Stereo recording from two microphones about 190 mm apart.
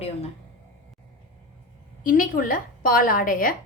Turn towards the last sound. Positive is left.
turn(degrees=50)  # may be behind; listen again after turning